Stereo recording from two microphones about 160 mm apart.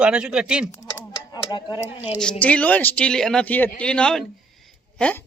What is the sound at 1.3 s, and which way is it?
Speech, 25° left (ahead or behind).